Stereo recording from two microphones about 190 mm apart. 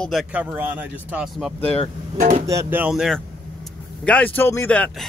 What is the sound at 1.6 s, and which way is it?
Speech, 30° left (ahead or behind).